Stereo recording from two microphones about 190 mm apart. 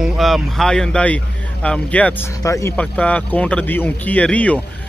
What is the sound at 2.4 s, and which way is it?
Speech, 15° left (ahead or behind).